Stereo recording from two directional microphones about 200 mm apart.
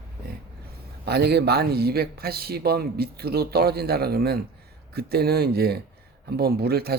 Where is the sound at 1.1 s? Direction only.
55° right (ahead or behind).